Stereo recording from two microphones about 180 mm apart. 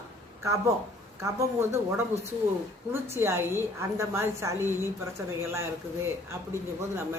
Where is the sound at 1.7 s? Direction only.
15° right (ahead or behind).